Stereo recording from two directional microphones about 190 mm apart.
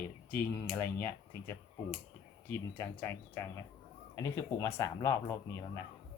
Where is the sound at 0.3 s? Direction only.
10° left (ahead or behind).